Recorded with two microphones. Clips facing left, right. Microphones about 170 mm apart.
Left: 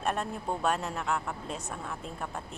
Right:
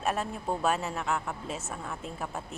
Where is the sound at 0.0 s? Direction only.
5° right (ahead or behind).